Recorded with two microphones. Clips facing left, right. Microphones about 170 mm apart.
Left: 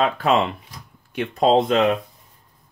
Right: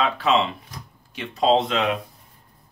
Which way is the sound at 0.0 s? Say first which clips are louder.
Left 2 dB; 50° left (ahead or behind).